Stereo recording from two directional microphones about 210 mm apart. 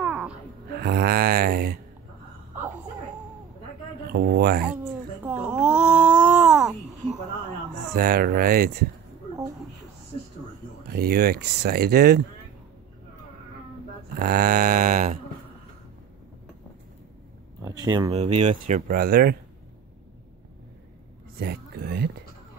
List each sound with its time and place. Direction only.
0.0 s gasp: 5° right (ahead or behind)
0.7 s mantra: 50° right (ahead or behind)
4.1 s speech: 50° right (ahead or behind)
5.2 s a sound: 5° right (ahead or behind)
7.9 s speech: 45° right (ahead or behind)
10.9 s speech: 50° right (ahead or behind)
14.1 s mantra: 45° right (ahead or behind)
17.6 s a sound: 20° right (ahead or behind)
18.1 s speech: 30° right (ahead or behind)
21.4 s a sound: 50° right (ahead or behind)